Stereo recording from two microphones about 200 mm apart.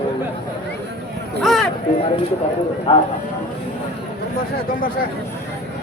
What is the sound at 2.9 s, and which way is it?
Speech, 25° left (ahead or behind).